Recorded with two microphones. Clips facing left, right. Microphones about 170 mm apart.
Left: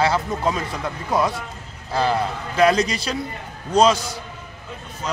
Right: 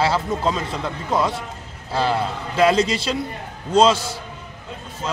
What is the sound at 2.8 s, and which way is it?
A man's voice, 25° right (ahead or behind).